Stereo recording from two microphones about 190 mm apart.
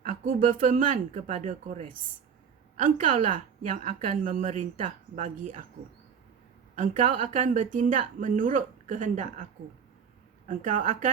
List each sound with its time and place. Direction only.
0.0 s a woman's voice: 40° right (ahead or behind)
6.7 s a woman's voice: 40° right (ahead or behind)
10.5 s a woman's voice: 40° right (ahead or behind)